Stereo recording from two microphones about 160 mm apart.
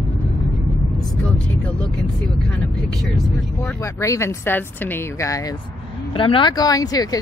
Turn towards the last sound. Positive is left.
turn(degrees=25)  # may be behind; listen again after turning